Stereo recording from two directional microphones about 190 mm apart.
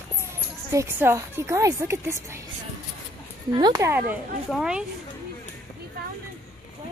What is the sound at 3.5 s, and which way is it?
Speech, 20° right (ahead or behind).